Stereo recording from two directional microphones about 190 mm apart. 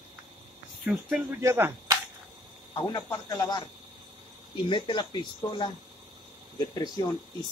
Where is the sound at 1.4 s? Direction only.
15° right (ahead or behind).